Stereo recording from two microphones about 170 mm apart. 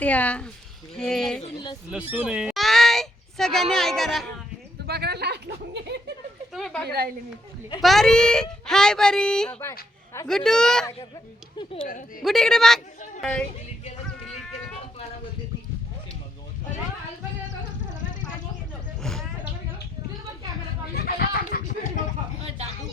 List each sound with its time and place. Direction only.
0.0 s speech: 10° left (ahead or behind)
1.9 s speech: 10° right (ahead or behind)
4.9 s speech: 70° right (ahead or behind)
6.5 s speech: centre (ahead or behind)
6.8 s a woman's voice: 65° right (ahead or behind)
7.8 s speech: centre (ahead or behind)
11.9 s speech: 55° left (ahead or behind)
12.2 s speech: centre (ahead or behind)
20.9 s a sound: 60° left (ahead or behind)
22.4 s speech: 40° right (ahead or behind)